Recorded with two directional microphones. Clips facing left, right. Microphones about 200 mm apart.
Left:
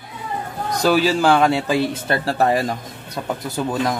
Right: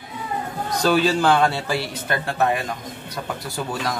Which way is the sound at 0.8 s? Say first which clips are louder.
Left 2 dB; 10° left (ahead or behind).